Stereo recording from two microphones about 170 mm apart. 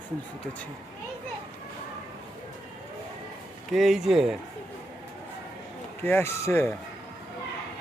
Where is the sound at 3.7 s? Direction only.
Centre (ahead or behind).